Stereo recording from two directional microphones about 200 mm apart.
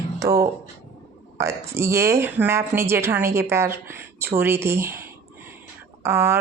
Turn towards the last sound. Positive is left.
turn(degrees=-10)  # may be behind; listen again after turning